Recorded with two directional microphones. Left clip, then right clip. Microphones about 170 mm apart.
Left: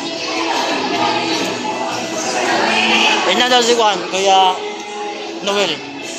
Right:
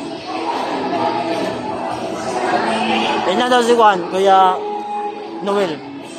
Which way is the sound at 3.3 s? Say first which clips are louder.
Left 1 dB; 35° right (ahead or behind).